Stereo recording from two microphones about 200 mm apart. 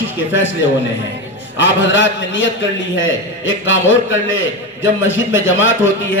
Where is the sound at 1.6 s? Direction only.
70° left (ahead or behind).